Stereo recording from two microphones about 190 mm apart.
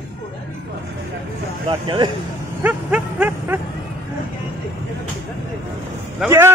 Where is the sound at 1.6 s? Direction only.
25° right (ahead or behind).